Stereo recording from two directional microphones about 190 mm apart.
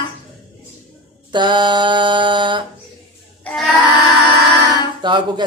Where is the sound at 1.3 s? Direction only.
25° right (ahead or behind).